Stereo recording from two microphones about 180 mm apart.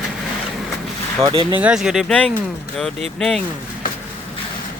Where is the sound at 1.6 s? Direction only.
5° right (ahead or behind).